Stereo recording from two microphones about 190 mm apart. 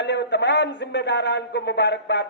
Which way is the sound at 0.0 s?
65° left (ahead or behind).